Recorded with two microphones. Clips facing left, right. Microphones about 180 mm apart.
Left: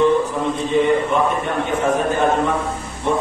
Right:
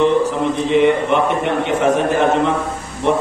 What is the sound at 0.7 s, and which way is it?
A man's voice, 85° right.